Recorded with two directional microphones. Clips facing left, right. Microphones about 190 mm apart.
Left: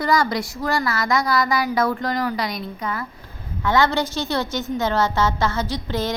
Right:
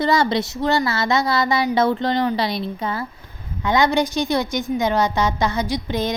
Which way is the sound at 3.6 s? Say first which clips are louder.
Right 2 dB; 15° right (ahead or behind).